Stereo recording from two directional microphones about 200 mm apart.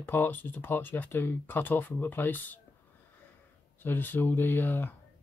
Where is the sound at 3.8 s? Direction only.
10° left (ahead or behind).